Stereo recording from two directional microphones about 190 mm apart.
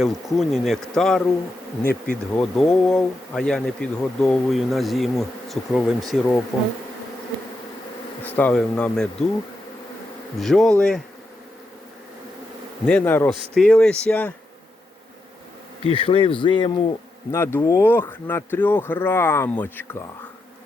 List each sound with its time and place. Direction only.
0.0 s speech: centre (ahead or behind)
1.8 s bee: 50° left (ahead or behind)
2.3 s speech: 5° left (ahead or behind)
8.4 s speech: 5° left (ahead or behind)
10.3 s speech: centre (ahead or behind)
12.8 s speech: 10° left (ahead or behind)
15.8 s speech: 30° left (ahead or behind); by 20.0 s 10° left (ahead or behind)